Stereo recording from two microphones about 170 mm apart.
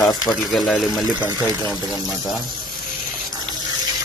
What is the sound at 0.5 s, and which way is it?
Speech, centre (ahead or behind).